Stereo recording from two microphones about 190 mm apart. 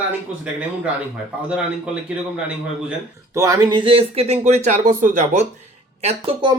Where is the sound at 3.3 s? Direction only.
15° right (ahead or behind).